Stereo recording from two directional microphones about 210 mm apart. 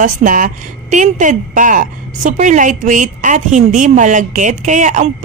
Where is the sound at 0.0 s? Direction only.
40° right (ahead or behind).